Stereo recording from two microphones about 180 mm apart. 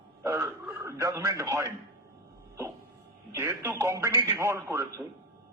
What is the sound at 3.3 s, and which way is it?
A man's voice, 15° right (ahead or behind).